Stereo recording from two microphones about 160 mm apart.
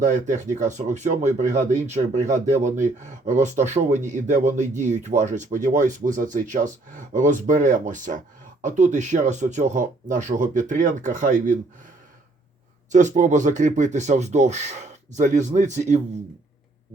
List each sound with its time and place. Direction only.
0.0 s speech: 50° right (ahead or behind)
12.9 s speech: 50° right (ahead or behind)